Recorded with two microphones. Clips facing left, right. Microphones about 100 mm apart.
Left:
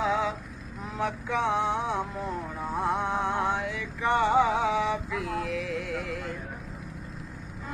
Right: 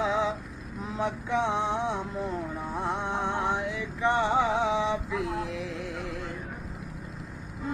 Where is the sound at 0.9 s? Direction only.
20° right (ahead or behind).